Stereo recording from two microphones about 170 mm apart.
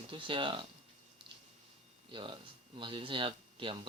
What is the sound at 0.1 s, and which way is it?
Speech, 30° right (ahead or behind).